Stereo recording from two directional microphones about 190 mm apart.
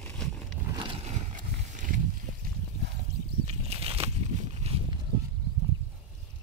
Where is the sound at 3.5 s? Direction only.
35° right (ahead or behind).